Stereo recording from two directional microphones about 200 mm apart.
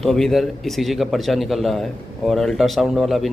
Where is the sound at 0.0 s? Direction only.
Centre (ahead or behind).